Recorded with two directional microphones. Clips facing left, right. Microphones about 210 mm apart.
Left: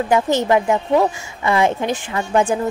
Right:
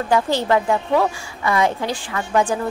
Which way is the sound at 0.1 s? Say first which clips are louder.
Left 1 dB; 20° left (ahead or behind).